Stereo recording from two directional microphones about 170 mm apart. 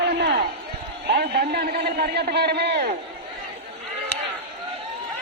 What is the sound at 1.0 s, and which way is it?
A man's voice, 70° right (ahead or behind).